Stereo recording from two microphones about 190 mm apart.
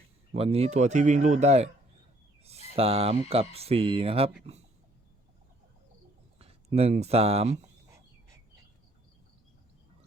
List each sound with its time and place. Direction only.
0.3 s speech: 30° right (ahead or behind)
2.7 s speech: 30° right (ahead or behind)
6.4 s speech: 30° right (ahead or behind)